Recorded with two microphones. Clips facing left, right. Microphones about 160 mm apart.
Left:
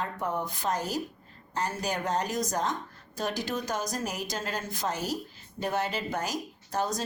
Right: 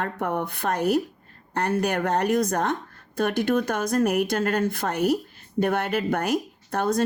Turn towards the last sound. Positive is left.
turn(degrees=-60)  # may be behind; listen again after turning